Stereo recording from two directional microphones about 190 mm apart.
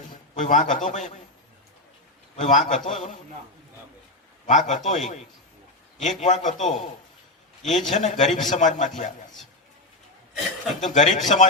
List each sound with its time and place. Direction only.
0.3 s a man's voice: 40° left (ahead or behind)
2.3 s a man's voice: 40° left (ahead or behind)
4.4 s a man's voice: 40° left (ahead or behind)
10.8 s a man's voice: 40° left (ahead or behind)